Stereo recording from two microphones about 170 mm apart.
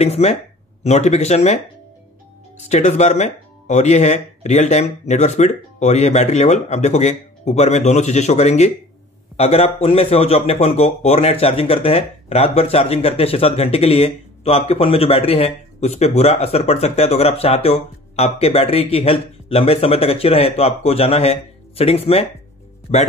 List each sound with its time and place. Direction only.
0.0 s a man's voice: 40° left (ahead or behind)
2.6 s a man's voice: 45° left (ahead or behind)